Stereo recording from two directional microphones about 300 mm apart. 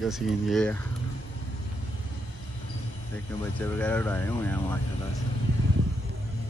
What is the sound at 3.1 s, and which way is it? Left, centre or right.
Speech, centre.